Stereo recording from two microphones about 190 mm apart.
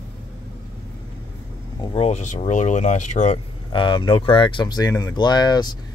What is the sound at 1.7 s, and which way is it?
Speech, 30° left (ahead or behind).